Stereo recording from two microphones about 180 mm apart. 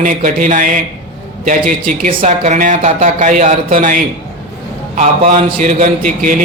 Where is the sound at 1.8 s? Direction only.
45° right (ahead or behind).